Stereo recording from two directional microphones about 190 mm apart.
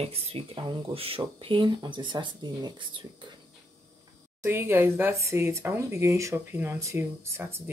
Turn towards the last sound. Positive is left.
turn(degrees=-10)  # may be behind; listen again after turning